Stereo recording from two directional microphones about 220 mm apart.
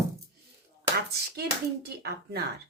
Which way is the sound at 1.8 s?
45° right (ahead or behind).